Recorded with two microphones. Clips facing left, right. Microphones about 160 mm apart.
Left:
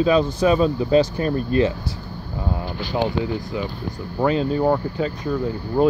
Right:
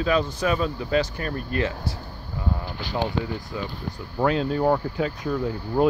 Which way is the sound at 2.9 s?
15° left (ahead or behind).